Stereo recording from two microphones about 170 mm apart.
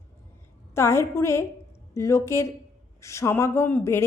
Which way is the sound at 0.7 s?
15° left (ahead or behind).